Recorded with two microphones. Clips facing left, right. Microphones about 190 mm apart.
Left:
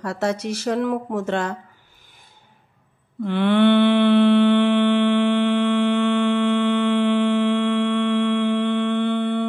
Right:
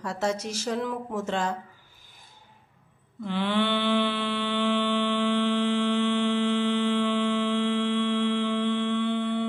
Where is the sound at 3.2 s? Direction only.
60° left (ahead or behind).